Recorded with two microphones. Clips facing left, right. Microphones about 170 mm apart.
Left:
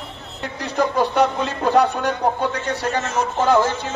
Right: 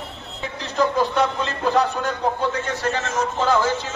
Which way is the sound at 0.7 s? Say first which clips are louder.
Left 1 dB; 60° left (ahead or behind).